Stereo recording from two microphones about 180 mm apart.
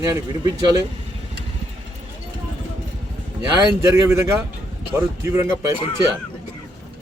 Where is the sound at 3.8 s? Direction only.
15° right (ahead or behind).